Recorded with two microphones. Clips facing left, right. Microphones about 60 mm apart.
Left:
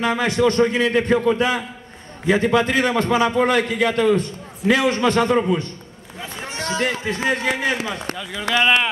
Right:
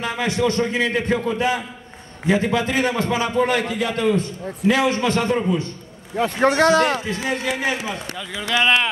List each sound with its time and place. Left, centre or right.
0.0 s a man's voice: left
6.1 s speech: right
7.1 s a man's voice: left
8.3 s speech: centre